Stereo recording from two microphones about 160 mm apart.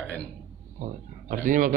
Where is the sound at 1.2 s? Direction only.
55° right (ahead or behind).